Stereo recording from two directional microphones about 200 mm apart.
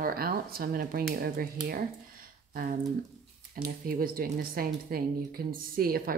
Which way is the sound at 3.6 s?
45° right (ahead or behind).